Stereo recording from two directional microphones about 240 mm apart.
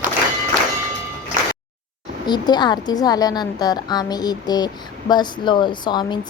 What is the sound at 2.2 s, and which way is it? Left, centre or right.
A woman's voice, centre.